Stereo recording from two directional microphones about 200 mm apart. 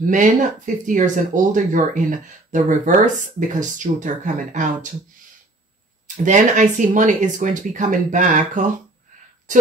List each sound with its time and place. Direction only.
0.0 s speech: 40° right (ahead or behind)
6.2 s speech: 40° right (ahead or behind)